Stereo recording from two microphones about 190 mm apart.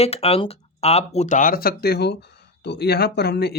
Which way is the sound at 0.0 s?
30° left (ahead or behind).